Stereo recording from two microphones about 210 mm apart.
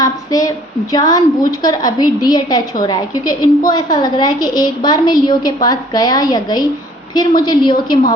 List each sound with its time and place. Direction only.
0.0 s a woman's voice: 15° left (ahead or behind)